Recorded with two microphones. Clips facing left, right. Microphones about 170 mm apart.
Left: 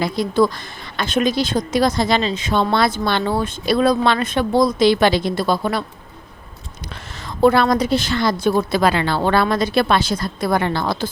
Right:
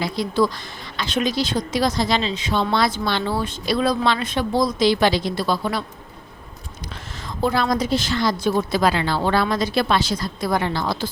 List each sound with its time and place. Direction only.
0.0 s a woman's voice: 50° left (ahead or behind)
7.3 s a woman's voice: 65° left (ahead or behind)